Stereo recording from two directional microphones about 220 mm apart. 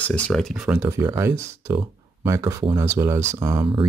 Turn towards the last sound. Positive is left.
turn(degrees=-20)  # may be behind; listen again after turning